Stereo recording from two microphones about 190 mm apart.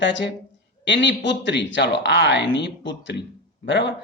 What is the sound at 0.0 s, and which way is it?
A woman's voice, 70° left (ahead or behind).